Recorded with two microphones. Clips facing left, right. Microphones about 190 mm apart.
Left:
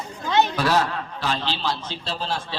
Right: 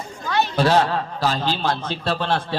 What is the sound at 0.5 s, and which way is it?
A man's voice, 30° right (ahead or behind).